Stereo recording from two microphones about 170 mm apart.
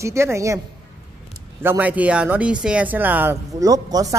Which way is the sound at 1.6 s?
10° right (ahead or behind).